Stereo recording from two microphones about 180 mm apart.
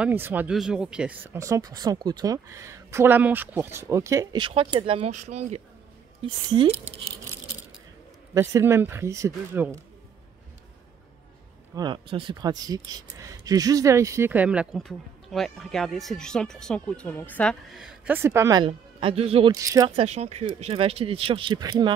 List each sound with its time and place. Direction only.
0.0 s speech: 10° right (ahead or behind); by 5.6 s 40° right (ahead or behind)
6.2 s speech: 30° right (ahead or behind)
8.4 s speech: 15° right (ahead or behind)
11.7 s speech: 25° right (ahead or behind); by 17.6 s 10° left (ahead or behind)
17.7 s speech: 5° right (ahead or behind)
18.7 s speech: 30° right (ahead or behind)
19.5 s speech: 20° right (ahead or behind)
20.0 s speech: 35° right (ahead or behind)